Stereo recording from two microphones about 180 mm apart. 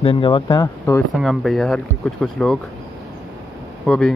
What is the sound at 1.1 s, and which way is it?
Speech, centre (ahead or behind).